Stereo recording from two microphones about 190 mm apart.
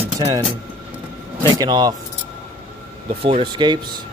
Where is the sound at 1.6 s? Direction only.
20° right (ahead or behind).